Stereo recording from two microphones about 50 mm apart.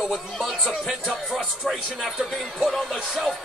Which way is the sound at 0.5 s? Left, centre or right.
Centre.